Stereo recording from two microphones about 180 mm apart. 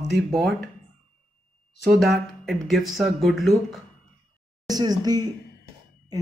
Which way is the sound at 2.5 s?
Centre (ahead or behind).